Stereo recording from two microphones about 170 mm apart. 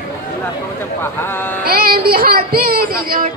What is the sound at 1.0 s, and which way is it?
Speech, 15° left (ahead or behind).